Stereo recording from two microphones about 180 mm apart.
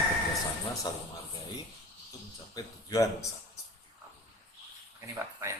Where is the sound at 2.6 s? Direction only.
20° left (ahead or behind).